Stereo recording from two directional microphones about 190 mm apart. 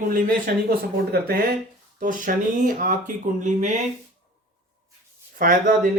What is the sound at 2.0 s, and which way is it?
A man's voice, 45° right (ahead or behind).